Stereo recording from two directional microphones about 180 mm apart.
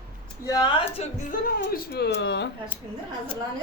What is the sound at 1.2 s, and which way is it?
Speech, 50° left (ahead or behind).